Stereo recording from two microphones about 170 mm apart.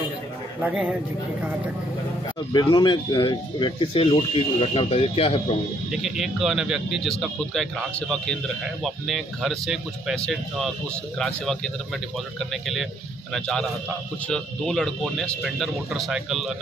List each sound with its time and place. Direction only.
0.6 s speech: 5° right (ahead or behind)
2.5 s speech: 30° left (ahead or behind)
5.9 s speech: centre (ahead or behind)
8.8 s speech: centre (ahead or behind)